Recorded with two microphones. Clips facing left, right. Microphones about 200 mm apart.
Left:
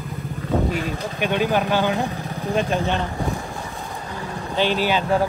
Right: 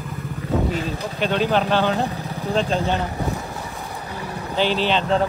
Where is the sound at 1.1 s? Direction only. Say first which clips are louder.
Right 1 dB; 15° left (ahead or behind).